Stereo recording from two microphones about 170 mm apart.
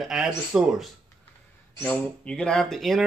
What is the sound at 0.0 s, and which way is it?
Speech, 5° right (ahead or behind).